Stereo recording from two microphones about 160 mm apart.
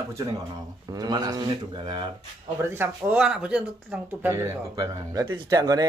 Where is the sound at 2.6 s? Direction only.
10° right (ahead or behind).